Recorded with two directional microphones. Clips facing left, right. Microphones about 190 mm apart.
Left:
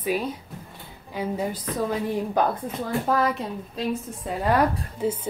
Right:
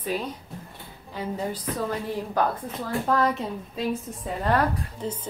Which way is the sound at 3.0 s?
5° left (ahead or behind).